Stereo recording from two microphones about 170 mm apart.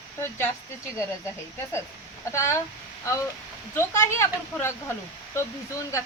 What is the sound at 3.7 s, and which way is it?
Speech, 15° left (ahead or behind).